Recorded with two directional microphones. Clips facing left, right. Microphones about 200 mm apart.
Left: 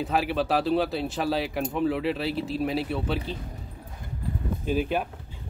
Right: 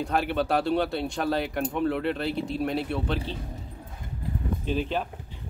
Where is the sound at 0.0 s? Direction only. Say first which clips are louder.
Even; centre (ahead or behind).